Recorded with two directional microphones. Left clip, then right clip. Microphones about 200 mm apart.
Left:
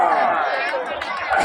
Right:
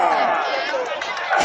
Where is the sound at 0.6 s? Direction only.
45° right (ahead or behind).